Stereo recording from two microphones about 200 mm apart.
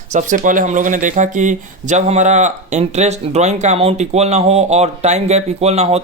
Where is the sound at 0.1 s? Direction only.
40° right (ahead or behind).